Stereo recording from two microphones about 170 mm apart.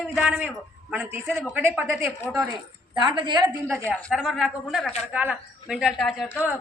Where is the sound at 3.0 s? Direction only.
25° right (ahead or behind).